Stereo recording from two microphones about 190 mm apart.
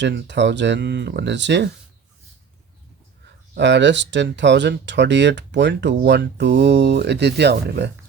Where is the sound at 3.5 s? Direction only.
65° right (ahead or behind).